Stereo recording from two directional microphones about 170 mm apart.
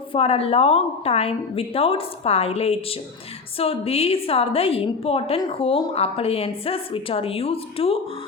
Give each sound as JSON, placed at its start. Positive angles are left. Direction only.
{"t": 0.1, "sound": "a woman's voice", "side_deg": 35}